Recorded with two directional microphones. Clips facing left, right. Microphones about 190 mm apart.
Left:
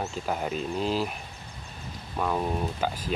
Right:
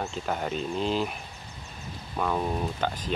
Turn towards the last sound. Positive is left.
turn(degrees=5)  # may be behind; listen again after turning